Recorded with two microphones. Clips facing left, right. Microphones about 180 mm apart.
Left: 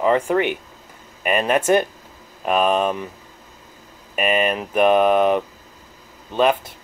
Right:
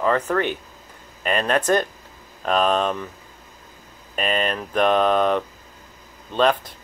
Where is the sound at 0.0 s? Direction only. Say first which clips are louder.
Left 3 dB; 15° left (ahead or behind).